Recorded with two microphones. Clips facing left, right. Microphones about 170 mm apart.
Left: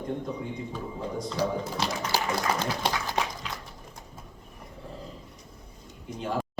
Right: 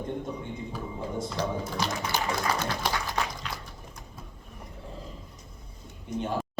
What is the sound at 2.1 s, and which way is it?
Speech, 30° left (ahead or behind).